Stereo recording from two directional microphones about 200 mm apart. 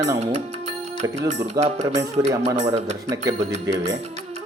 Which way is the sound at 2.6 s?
35° right (ahead or behind).